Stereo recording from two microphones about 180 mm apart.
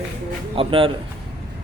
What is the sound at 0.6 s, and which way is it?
Speech, 30° right (ahead or behind).